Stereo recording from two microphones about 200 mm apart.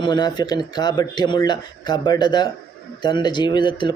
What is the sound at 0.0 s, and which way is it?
A man's voice, 20° left (ahead or behind).